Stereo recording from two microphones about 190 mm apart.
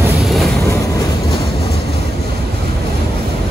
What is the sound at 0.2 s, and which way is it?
Vehicle, centre (ahead or behind).